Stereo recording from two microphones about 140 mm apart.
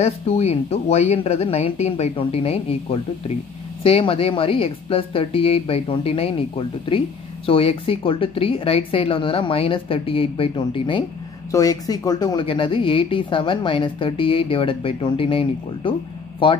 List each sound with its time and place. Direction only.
0.0 s a woman's voice: 50° left (ahead or behind)